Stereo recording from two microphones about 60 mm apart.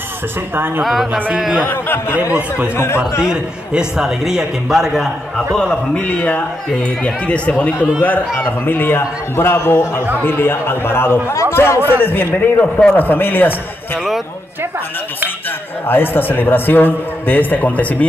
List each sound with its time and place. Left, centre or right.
1.4 s speech: centre
1.7 s a man's voice: left
3.0 s a man's voice: centre
5.9 s a man's voice: left
15.9 s a man's voice: left